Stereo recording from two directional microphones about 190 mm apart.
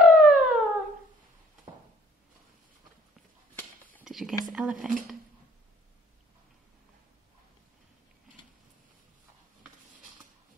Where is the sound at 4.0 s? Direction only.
Centre (ahead or behind).